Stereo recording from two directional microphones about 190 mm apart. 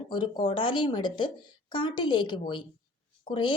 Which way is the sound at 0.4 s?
25° left (ahead or behind).